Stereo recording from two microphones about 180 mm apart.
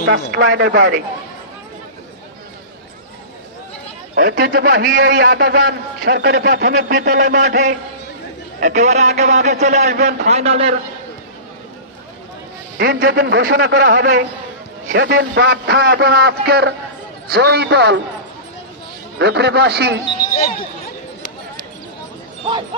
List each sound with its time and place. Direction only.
0.1 s speech: 80° right
4.1 s a man's voice: 70° right (ahead or behind)
7.4 s a man's voice: 45° right (ahead or behind)
8.5 s a man's voice: 55° right (ahead or behind)
8.8 s a man's voice: 40° right (ahead or behind)
12.7 s a man's voice: 70° right (ahead or behind)
19.1 s a man's voice: 70° right (ahead or behind)
20.3 s speech: 45° left (ahead or behind)